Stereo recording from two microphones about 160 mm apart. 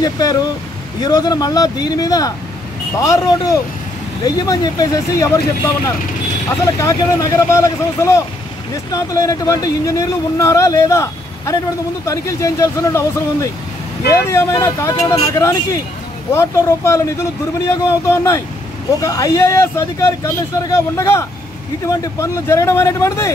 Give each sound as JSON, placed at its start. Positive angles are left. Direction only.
{"t": 0.0, "sound": "speech", "side_deg": 25}
{"t": 6.6, "sound": "speech", "side_deg": 20}